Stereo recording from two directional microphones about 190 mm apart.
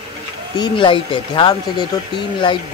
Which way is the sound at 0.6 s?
25° left (ahead or behind).